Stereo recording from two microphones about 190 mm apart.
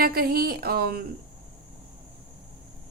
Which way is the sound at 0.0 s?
55° right (ahead or behind).